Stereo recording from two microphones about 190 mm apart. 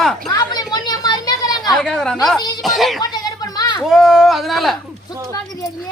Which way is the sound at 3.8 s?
Centre (ahead or behind).